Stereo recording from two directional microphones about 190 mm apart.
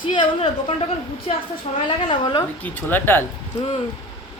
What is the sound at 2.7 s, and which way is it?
Speech, 10° left (ahead or behind).